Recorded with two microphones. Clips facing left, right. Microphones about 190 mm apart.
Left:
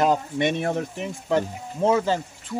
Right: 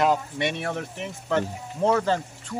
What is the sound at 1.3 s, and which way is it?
Speech, 10° left (ahead or behind).